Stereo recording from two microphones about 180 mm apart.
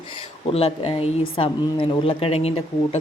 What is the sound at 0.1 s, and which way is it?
A woman's voice, 35° left (ahead or behind).